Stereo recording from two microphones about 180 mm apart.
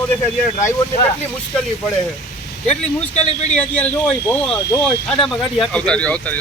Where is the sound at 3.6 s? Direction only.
10° left (ahead or behind).